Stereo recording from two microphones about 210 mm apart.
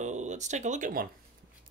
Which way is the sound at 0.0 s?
35° right (ahead or behind).